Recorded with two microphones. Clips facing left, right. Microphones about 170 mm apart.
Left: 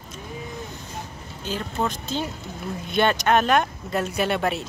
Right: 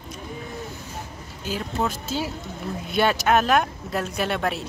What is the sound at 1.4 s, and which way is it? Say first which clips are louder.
A woman's voice: even; 5° right (ahead or behind).